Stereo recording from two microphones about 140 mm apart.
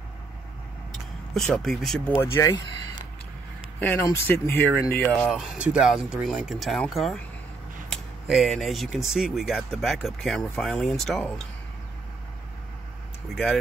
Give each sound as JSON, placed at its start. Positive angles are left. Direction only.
{"t": 1.3, "sound": "speech", "side_deg": 5}
{"t": 2.1, "sound": "speech", "side_deg": 20}
{"t": 3.9, "sound": "speech", "side_deg": 20}
{"t": 13.3, "sound": "speech", "side_deg": 0}